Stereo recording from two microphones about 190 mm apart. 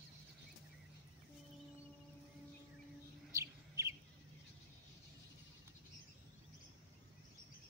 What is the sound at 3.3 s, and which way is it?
Bird, 15° right (ahead or behind).